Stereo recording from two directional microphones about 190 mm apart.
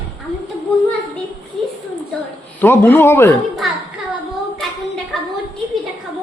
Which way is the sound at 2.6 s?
10° left (ahead or behind).